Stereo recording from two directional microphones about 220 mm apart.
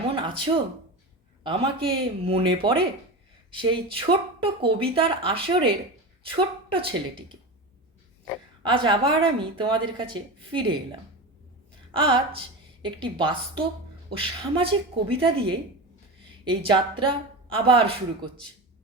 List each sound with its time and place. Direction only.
0.1 s a sound: 25° right (ahead or behind)
1.5 s speech: 25° right (ahead or behind)
8.6 s speech: 20° right (ahead or behind)
11.9 s speech: 25° right (ahead or behind)